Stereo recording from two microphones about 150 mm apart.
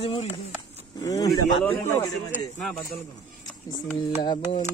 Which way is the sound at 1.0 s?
25° left (ahead or behind).